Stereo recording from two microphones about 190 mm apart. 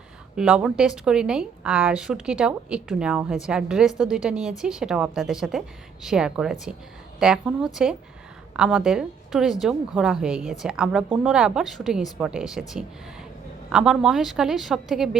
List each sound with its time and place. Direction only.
0.3 s a woman's voice: 5° right (ahead or behind)